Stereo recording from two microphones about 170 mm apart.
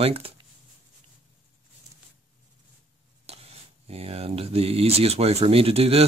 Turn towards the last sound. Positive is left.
turn(degrees=-35)  # may be behind; listen again after turning